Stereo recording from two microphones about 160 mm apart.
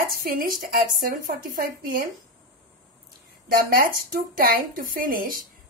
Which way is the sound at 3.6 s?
65° right (ahead or behind).